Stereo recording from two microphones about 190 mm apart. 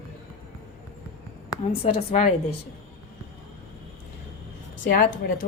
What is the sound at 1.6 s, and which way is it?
Speech, 30° left (ahead or behind).